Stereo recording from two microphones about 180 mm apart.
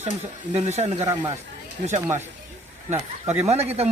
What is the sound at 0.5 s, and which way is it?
Speech, 35° right (ahead or behind).